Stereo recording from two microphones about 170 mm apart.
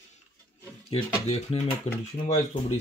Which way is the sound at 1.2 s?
35° left (ahead or behind).